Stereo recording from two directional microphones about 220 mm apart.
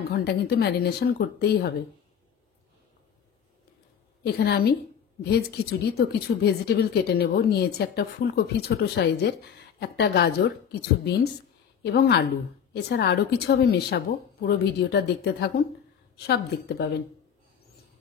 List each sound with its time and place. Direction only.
0.1 s a woman's voice: 50° left (ahead or behind)
4.2 s a woman's voice: 50° left (ahead or behind)